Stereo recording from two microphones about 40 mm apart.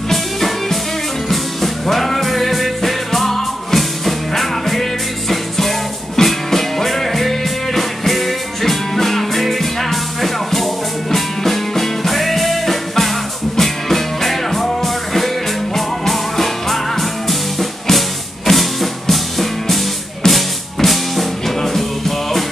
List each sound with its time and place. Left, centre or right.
0.1 s music: centre